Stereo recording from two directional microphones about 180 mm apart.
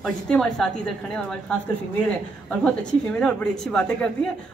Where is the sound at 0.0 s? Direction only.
5° left (ahead or behind).